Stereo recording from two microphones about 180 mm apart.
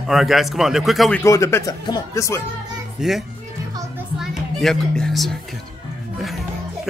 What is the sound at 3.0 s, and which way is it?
Speech, 5° right (ahead or behind).